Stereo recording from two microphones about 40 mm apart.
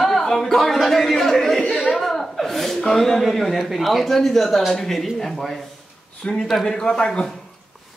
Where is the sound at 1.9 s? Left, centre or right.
Centre.